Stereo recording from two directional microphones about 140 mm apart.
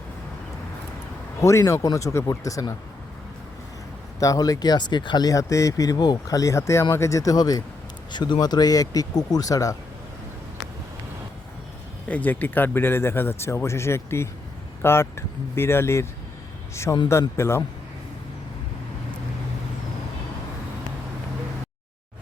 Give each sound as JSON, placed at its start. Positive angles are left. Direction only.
{"t": 1.4, "sound": "speech", "side_deg": 20}
{"t": 4.2, "sound": "speech", "side_deg": 25}
{"t": 12.0, "sound": "speech", "side_deg": 10}